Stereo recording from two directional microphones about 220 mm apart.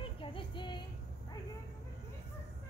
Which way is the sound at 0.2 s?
20° left (ahead or behind).